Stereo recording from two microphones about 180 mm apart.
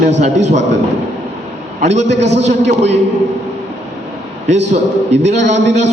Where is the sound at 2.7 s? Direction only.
75° right (ahead or behind).